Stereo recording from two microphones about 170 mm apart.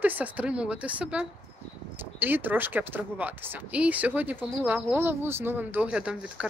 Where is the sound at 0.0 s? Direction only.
10° right (ahead or behind).